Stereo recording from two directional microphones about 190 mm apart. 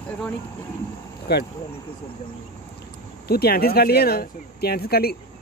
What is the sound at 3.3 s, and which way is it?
Speech, 55° left (ahead or behind).